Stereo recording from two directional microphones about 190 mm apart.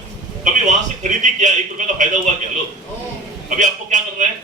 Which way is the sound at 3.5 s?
40° right (ahead or behind).